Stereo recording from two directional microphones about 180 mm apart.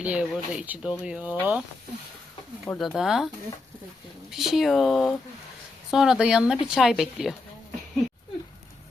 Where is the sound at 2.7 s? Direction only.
Centre (ahead or behind).